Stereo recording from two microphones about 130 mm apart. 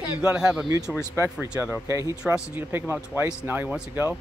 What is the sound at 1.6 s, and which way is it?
Speech, 20° right (ahead or behind).